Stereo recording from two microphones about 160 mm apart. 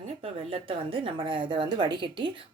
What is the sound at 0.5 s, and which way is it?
A woman's voice, 35° right (ahead or behind).